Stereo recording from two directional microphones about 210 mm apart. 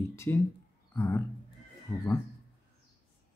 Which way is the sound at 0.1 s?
10° left (ahead or behind).